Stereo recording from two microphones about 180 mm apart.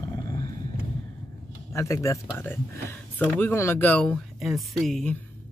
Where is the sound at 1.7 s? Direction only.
15° left (ahead or behind).